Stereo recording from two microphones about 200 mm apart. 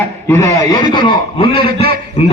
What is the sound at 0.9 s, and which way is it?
Speech, 25° left (ahead or behind).